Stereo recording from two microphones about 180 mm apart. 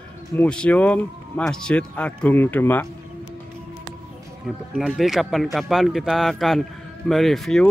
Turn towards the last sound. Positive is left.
turn(degrees=0)  # may be behind; listen again after turning